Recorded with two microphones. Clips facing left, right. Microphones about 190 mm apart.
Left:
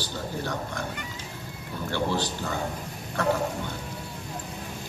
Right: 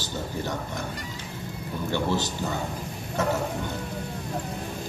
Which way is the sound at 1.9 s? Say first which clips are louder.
Right 1 dB; 20° right (ahead or behind).